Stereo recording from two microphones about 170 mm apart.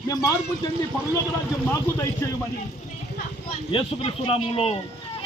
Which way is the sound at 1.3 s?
15° left (ahead or behind).